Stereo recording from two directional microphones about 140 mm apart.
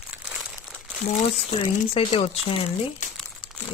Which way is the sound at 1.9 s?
40° left (ahead or behind).